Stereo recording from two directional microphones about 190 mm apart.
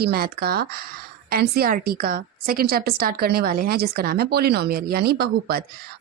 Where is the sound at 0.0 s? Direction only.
55° right (ahead or behind).